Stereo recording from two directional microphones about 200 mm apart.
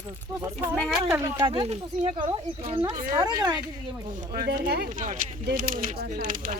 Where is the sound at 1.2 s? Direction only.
20° right (ahead or behind).